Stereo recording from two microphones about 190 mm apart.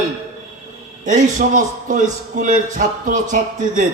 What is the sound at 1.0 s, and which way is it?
A man's voice, 40° right (ahead or behind).